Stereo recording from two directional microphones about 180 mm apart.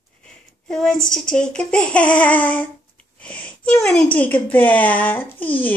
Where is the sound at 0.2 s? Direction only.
5° left (ahead or behind).